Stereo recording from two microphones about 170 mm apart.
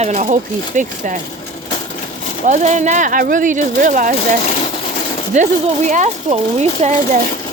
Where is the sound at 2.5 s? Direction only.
45° right (ahead or behind).